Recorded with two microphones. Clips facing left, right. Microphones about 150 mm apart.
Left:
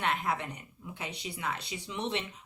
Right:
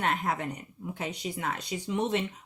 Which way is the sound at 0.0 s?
45° right (ahead or behind).